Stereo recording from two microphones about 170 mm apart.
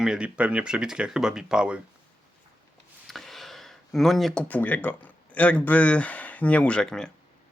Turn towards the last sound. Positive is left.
turn(degrees=5)  # may be behind; listen again after turning